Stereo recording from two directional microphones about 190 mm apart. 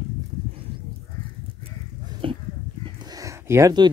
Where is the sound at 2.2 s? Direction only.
25° right (ahead or behind).